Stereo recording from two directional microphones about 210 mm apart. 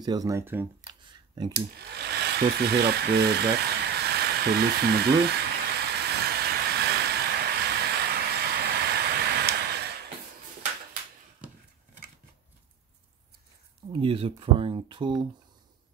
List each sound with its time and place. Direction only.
0.0 s speech: 15° right (ahead or behind)
0.8 s a sound: 20° right (ahead or behind)
1.5 s hair dryer: 50° right (ahead or behind)
13.9 s speech: 25° right (ahead or behind)